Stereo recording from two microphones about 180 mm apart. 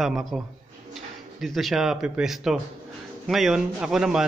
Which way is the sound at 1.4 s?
Centre (ahead or behind).